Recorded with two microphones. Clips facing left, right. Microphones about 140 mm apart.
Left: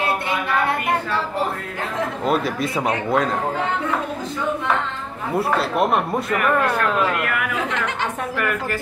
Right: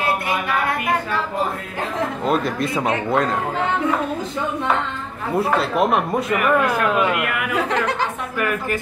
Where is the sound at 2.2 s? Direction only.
5° left (ahead or behind).